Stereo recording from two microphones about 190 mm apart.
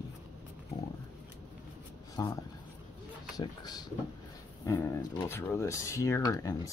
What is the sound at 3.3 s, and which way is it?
Speech, 20° left (ahead or behind).